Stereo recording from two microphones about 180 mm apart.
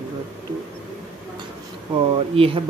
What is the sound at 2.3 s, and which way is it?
Speech, 30° right (ahead or behind).